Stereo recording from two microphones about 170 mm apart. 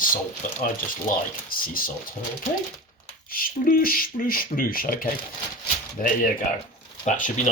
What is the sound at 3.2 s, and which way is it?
Speech, 60° left (ahead or behind).